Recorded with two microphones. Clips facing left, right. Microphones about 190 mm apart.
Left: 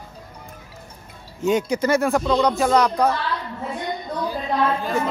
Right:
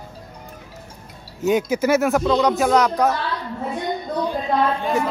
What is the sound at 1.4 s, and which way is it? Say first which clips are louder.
A woman's voice: right 1 dB; 5° right (ahead or behind).